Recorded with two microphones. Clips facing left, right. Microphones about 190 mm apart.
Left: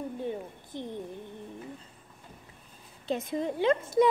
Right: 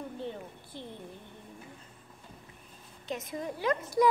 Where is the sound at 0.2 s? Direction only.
15° left (ahead or behind).